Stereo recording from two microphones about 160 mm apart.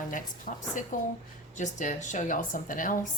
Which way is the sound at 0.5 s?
55° left (ahead or behind).